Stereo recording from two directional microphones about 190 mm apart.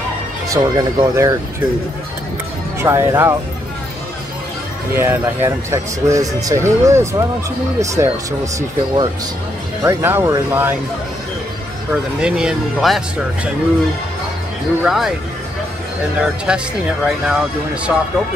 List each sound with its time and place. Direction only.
0.5 s speech: 20° right (ahead or behind)
2.8 s speech: 15° right (ahead or behind)
4.9 s speech: 10° right (ahead or behind)
9.8 s speech: 10° right (ahead or behind)
11.9 s speech: 5° right (ahead or behind)
14.8 s speech: centre (ahead or behind)
16.2 s speech: 5° right (ahead or behind)